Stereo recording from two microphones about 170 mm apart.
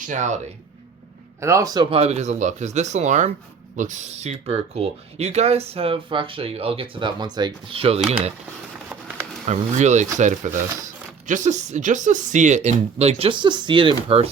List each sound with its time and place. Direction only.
0.1 s speech: 45° right (ahead or behind)
1.4 s speech: 15° right (ahead or behind); by 8.0 s 35° right (ahead or behind)
9.5 s speech: 45° right (ahead or behind)